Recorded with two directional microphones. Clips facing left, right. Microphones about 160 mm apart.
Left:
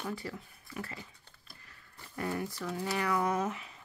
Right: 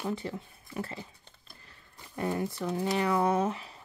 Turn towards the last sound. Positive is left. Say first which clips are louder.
# right 5 dB
turn(degrees=-30)  # may be behind; listen again after turning